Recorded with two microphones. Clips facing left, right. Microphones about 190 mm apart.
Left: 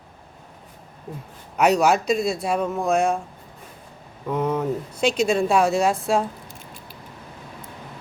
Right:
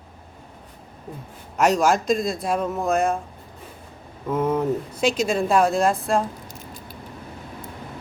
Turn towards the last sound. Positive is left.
turn(degrees=0)  # may be behind; listen again after turning